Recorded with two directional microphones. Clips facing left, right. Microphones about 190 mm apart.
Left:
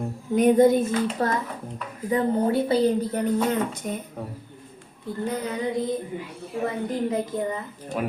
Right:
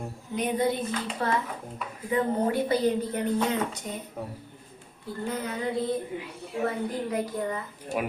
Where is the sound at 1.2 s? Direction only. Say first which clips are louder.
Left 3 dB; 40° left (ahead or behind).